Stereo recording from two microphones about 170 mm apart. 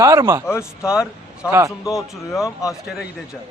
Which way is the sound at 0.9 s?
5° right (ahead or behind).